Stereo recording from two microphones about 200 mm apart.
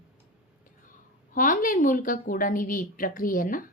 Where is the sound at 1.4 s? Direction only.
40° left (ahead or behind).